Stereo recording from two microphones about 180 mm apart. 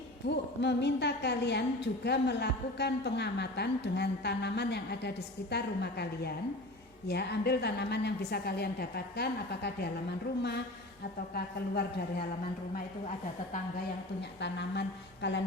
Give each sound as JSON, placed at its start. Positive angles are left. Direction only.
{"t": 0.3, "sound": "a woman's voice", "side_deg": 70}
{"t": 14.2, "sound": "a woman's voice", "side_deg": 75}